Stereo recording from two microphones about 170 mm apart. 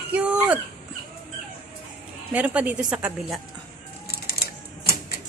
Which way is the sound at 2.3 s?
10° right (ahead or behind).